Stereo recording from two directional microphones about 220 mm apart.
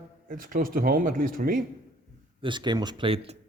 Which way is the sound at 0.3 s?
40° right (ahead or behind).